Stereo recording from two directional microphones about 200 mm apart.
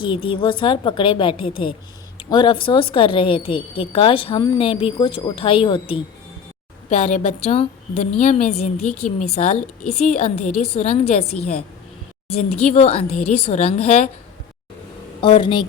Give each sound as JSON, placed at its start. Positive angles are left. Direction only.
{"t": 0.0, "sound": "a woman's voice", "side_deg": 25}
{"t": 9.8, "sound": "a woman's voice", "side_deg": 5}
{"t": 10.1, "sound": "a woman's voice", "side_deg": 30}
{"t": 12.4, "sound": "a woman's voice", "side_deg": 35}
{"t": 15.2, "sound": "a woman's voice", "side_deg": 25}